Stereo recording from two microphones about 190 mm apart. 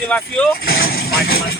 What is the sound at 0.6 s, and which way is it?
Speech, 55° left (ahead or behind).